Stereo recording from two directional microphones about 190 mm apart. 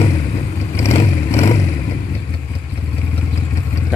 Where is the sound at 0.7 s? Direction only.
35° left (ahead or behind).